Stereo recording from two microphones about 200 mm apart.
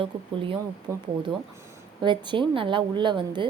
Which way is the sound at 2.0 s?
25° right (ahead or behind).